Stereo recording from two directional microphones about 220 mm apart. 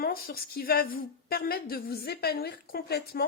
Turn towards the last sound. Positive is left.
turn(degrees=45)  # may be behind; listen again after turning